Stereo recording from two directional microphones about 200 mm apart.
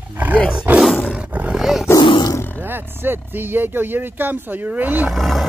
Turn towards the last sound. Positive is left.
turn(degrees=0)  # may be behind; listen again after turning